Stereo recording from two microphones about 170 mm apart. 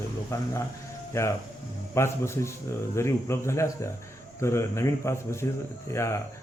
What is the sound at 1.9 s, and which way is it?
Speech, 15° left (ahead or behind).